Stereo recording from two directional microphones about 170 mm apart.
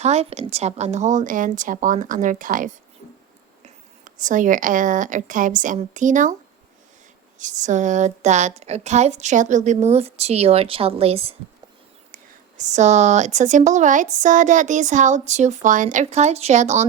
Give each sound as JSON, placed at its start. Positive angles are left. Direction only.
{"t": 0.0, "sound": "speech", "side_deg": -40}
{"t": 7.3, "sound": "speech", "side_deg": -45}